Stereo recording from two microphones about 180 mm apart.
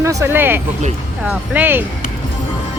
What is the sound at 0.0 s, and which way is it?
Speech, 15° right (ahead or behind).